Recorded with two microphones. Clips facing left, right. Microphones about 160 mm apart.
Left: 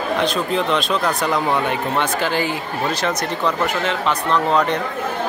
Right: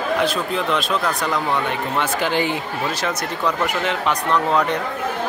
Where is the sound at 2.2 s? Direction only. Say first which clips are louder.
Even; 20° right (ahead or behind).